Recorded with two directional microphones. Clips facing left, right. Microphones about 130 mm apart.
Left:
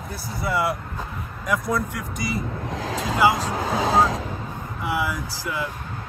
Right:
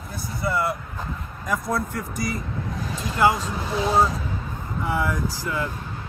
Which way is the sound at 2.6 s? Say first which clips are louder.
Left 3 dB; 90° left.